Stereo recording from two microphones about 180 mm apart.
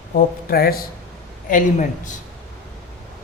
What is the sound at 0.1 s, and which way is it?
Speech, 55° left (ahead or behind).